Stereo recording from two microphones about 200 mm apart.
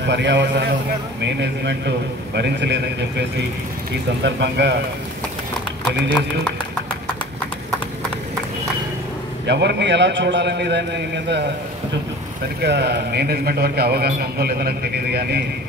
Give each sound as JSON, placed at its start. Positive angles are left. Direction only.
{"t": 0.0, "sound": "a man's voice", "side_deg": -60}
{"t": 9.5, "sound": "a man's voice", "side_deg": -60}
{"t": 12.6, "sound": "a man's voice", "side_deg": -55}